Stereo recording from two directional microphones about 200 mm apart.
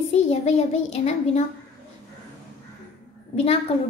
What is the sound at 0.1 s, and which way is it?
A child's voice, 30° left (ahead or behind).